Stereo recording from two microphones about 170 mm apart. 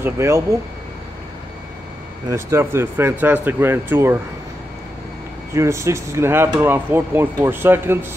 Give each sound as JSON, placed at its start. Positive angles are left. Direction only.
{"t": 0.0, "sound": "speech", "side_deg": -15}
{"t": 2.2, "sound": "speech", "side_deg": -15}
{"t": 5.5, "sound": "speech", "side_deg": -15}